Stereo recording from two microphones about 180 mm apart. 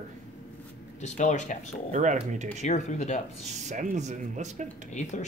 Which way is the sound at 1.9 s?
45° right (ahead or behind).